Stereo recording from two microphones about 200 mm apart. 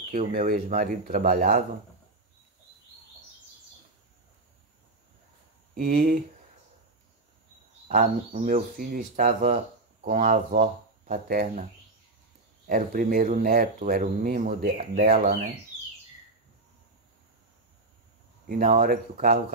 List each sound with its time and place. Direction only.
0.3 s speech: 40° right (ahead or behind)
5.8 s speech: 45° right (ahead or behind)
7.9 s speech: 40° right (ahead or behind)
11.2 s speech: 45° right (ahead or behind)
12.6 s speech: 45° right (ahead or behind)
18.8 s speech: 45° right (ahead or behind)